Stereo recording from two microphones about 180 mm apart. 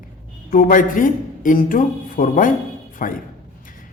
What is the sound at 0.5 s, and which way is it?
A man's voice, 50° left (ahead or behind).